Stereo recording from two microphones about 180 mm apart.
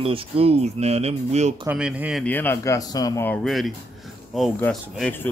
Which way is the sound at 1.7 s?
5° right (ahead or behind).